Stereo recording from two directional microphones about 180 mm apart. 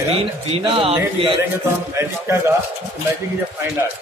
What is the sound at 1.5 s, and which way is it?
A man's voice, 15° right (ahead or behind).